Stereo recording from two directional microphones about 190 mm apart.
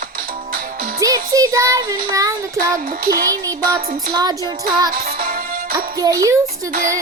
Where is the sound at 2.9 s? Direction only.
50° right (ahead or behind).